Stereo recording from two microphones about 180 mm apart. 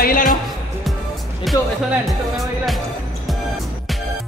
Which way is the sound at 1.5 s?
Centre (ahead or behind).